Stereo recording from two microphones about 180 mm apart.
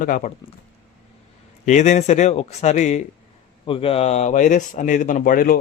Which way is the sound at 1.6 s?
40° left (ahead or behind).